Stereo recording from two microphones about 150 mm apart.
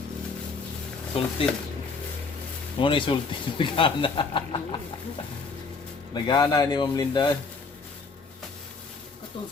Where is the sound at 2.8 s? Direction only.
35° left (ahead or behind).